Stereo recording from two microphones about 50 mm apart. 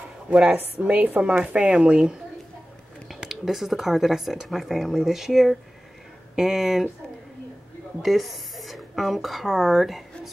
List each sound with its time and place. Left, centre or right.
0.3 s speech: centre
0.6 s speech: right
3.2 s speech: centre
8.0 s speech: centre